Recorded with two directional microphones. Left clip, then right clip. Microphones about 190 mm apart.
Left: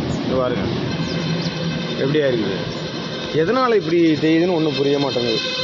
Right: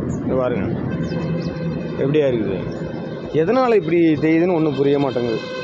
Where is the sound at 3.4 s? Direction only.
20° right (ahead or behind).